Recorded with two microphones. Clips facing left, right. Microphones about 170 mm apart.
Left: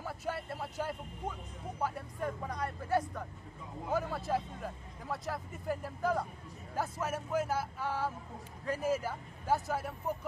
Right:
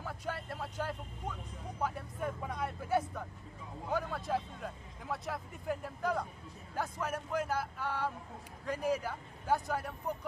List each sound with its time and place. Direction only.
0.0 s speech: 5° left (ahead or behind)